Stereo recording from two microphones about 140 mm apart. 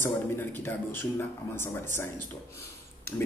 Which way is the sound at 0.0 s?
15° left (ahead or behind).